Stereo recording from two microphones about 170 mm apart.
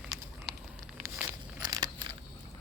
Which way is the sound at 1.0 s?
15° right (ahead or behind).